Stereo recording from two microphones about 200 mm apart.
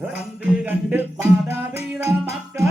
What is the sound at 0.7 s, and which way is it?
Music, 10° right (ahead or behind).